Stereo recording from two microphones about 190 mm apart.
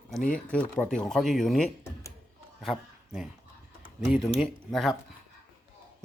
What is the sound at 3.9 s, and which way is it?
Speech, centre (ahead or behind).